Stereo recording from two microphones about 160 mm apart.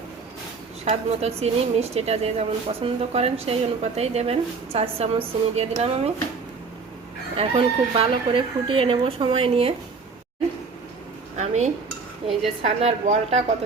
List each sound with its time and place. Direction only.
0.9 s a woman's voice: 40° right (ahead or behind)
7.3 s a woman's voice: 40° right (ahead or behind)
11.3 s dishes: 45° right (ahead or behind)
12.6 s a woman's voice: 45° right (ahead or behind)